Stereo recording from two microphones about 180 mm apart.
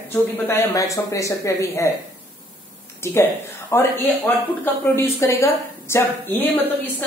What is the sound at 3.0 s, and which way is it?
Speech, 15° left (ahead or behind).